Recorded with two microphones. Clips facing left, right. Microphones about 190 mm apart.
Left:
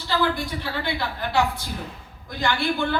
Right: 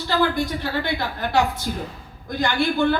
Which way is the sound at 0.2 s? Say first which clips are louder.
Right 4 dB; 50° right (ahead or behind).